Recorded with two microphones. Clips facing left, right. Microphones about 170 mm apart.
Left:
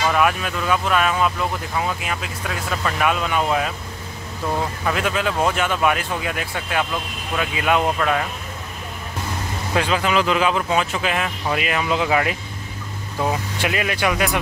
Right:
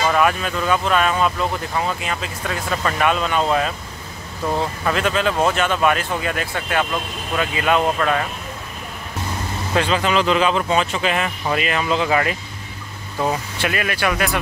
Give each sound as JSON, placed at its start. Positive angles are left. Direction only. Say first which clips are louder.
{"t": 0.1, "sound": "speech", "louder": "right 1 dB", "side_deg": 5}
{"t": 4.8, "sound": "speech", "louder": "right 3 dB", "side_deg": 10}
{"t": 9.8, "sound": "speech", "louder": "right 1 dB", "side_deg": 5}
{"t": 13.6, "sound": "speech", "louder": "even", "side_deg": 15}